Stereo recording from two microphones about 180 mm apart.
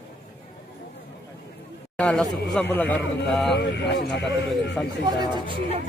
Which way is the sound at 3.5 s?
70° left (ahead or behind).